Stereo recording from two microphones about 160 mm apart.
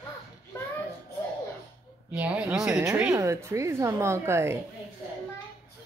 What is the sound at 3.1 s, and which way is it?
A woman's voice, 15° right (ahead or behind).